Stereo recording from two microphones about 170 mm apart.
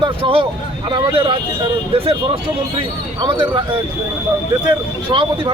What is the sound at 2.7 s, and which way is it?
Speech, 30° right (ahead or behind).